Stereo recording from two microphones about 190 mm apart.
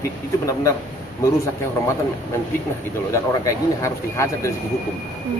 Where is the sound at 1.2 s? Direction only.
15° left (ahead or behind).